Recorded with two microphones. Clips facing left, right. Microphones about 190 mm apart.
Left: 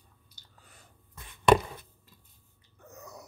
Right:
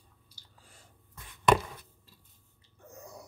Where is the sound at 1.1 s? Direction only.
25° left (ahead or behind).